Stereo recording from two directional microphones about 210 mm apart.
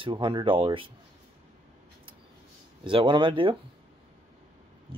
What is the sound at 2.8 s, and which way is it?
Speech, 25° right (ahead or behind).